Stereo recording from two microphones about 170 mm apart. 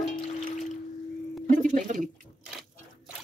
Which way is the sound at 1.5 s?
50° right (ahead or behind).